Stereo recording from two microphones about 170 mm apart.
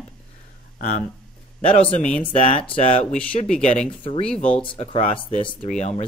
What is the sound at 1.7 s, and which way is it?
Speech, 40° left (ahead or behind).